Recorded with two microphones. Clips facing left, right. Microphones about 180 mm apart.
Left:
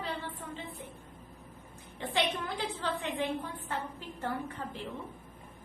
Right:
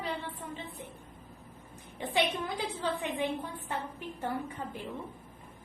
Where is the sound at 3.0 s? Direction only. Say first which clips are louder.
Right 1 dB; 15° right (ahead or behind).